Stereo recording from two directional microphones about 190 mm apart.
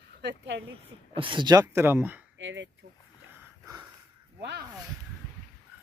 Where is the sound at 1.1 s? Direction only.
25° right (ahead or behind).